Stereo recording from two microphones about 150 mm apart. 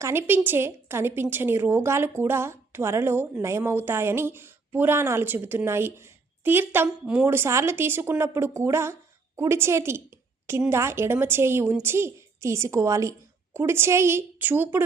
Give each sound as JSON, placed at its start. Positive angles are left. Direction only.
{"t": 0.0, "sound": "a woman's voice", "side_deg": -15}